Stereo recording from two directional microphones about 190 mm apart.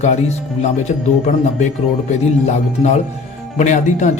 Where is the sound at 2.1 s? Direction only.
35° left (ahead or behind).